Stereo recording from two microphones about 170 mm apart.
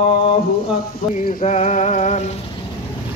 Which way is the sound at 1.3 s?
45° left (ahead or behind).